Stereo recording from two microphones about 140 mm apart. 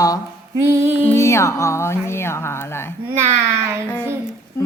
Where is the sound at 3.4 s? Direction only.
20° right (ahead or behind).